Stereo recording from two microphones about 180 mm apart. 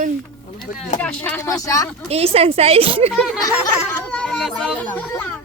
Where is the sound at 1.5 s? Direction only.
20° left (ahead or behind).